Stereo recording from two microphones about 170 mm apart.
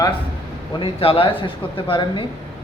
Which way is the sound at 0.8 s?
35° left (ahead or behind).